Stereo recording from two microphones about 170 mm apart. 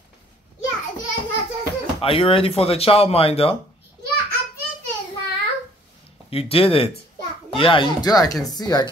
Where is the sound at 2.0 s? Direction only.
30° left (ahead or behind).